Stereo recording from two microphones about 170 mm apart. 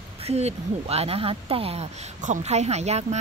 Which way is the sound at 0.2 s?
40° right (ahead or behind).